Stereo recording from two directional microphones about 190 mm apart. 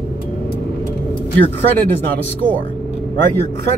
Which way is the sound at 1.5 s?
10° left (ahead or behind).